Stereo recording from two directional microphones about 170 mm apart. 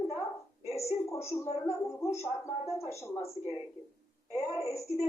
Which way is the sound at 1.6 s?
15° left (ahead or behind).